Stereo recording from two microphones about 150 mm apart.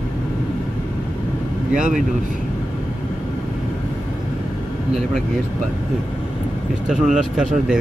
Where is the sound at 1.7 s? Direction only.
60° right (ahead or behind).